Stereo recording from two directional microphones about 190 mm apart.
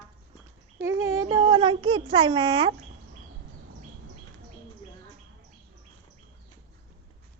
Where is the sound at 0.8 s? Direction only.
15° right (ahead or behind).